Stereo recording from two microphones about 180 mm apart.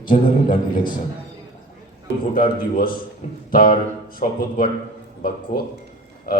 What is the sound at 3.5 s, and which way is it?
Speech, 50° left (ahead or behind).